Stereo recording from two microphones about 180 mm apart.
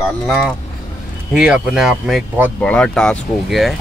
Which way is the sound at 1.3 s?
5° right (ahead or behind).